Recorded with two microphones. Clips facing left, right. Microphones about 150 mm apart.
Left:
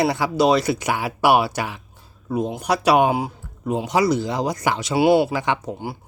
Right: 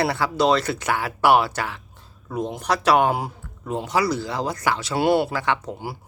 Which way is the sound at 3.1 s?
Centre (ahead or behind).